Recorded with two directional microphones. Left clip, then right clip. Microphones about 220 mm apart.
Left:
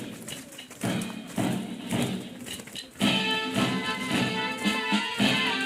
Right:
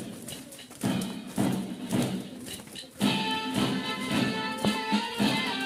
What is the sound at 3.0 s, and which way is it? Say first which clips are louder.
Music: left 3 dB; 45° left (ahead or behind).